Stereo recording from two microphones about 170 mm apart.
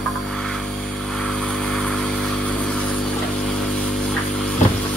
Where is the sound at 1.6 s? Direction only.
5° left (ahead or behind).